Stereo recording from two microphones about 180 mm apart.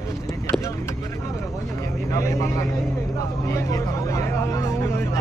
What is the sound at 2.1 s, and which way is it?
Speech, 15° left (ahead or behind).